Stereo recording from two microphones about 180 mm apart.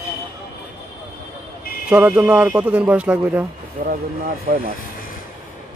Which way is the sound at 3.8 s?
55° right (ahead or behind).